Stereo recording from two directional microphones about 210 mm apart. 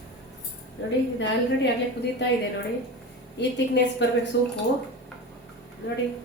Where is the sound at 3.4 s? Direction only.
55° left (ahead or behind).